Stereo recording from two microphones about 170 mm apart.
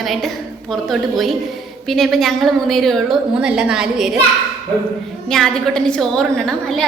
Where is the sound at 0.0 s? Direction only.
Centre (ahead or behind).